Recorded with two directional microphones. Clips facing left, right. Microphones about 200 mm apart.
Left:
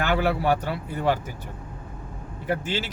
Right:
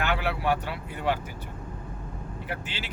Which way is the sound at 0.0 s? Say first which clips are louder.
Left 5 dB; 40° left (ahead or behind).